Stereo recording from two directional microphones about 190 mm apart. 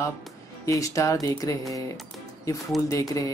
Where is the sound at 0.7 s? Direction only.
15° left (ahead or behind).